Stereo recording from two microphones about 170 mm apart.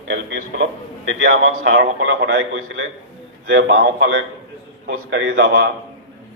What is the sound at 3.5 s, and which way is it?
Speech, 85° right.